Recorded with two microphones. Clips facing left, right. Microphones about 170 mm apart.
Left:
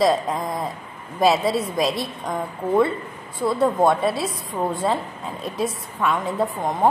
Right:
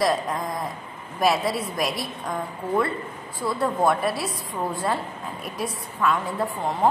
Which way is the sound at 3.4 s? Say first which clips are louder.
Left 4 dB; 25° left (ahead or behind).